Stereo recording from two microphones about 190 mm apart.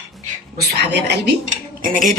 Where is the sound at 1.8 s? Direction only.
45° right (ahead or behind).